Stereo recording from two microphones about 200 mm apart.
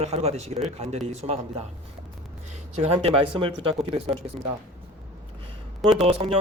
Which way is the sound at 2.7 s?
30° right (ahead or behind).